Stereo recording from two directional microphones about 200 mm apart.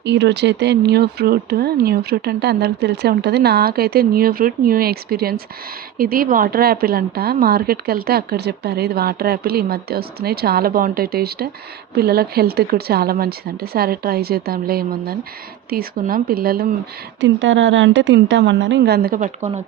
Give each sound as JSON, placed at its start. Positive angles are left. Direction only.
{"t": 0.0, "sound": "a woman's voice", "side_deg": -60}
{"t": 17.2, "sound": "a woman's voice", "side_deg": -70}